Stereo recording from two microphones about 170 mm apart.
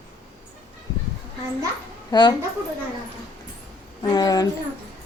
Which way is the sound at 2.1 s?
25° left (ahead or behind).